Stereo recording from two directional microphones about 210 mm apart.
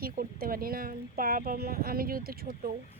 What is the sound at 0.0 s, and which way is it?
Speech, 45° right (ahead or behind).